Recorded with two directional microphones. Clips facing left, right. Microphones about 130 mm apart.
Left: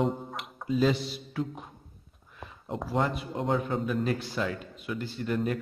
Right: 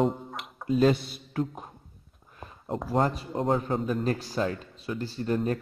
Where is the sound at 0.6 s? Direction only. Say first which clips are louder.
Right 3 dB; 50° right (ahead or behind).